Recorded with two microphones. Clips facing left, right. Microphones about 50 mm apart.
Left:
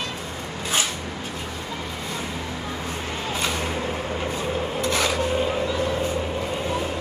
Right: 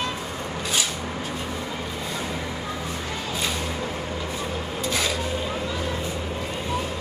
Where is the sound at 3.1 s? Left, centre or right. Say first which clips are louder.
Left 3 dB; left.